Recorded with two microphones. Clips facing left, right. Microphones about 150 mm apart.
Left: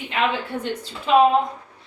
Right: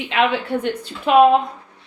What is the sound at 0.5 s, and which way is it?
Speech, 60° right (ahead or behind).